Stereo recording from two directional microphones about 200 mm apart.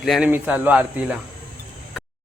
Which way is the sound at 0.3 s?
10° right (ahead or behind).